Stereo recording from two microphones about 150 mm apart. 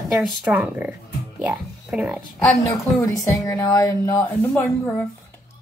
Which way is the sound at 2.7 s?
20° left (ahead or behind).